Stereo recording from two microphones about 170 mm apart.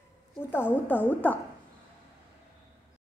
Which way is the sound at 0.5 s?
10° left (ahead or behind).